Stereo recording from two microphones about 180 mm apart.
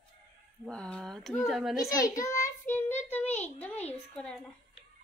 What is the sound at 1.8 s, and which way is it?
A child's voice, 20° left (ahead or behind).